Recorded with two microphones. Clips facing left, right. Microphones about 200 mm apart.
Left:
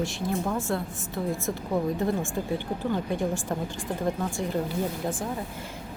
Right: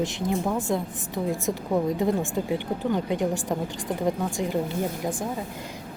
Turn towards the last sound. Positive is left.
turn(degrees=-15)  # may be behind; listen again after turning